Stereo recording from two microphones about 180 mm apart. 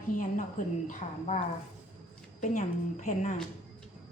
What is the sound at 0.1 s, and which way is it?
A woman's voice, 45° left (ahead or behind).